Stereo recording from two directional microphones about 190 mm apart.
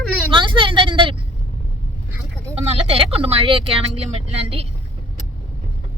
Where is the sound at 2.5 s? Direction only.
30° right (ahead or behind).